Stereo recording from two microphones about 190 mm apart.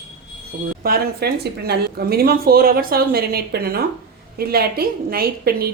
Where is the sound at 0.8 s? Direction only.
55° right (ahead or behind).